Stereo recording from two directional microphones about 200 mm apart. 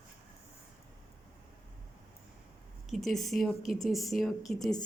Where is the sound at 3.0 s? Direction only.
Centre (ahead or behind).